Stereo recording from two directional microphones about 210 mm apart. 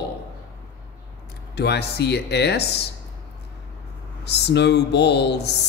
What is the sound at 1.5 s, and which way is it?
Speech, 50° left (ahead or behind).